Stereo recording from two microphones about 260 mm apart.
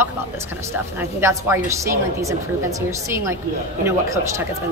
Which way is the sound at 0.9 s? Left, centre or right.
Centre.